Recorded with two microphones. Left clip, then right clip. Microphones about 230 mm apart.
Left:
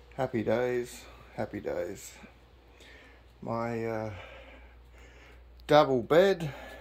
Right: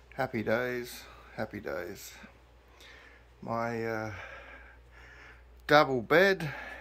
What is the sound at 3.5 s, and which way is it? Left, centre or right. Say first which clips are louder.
Speech: even; centre.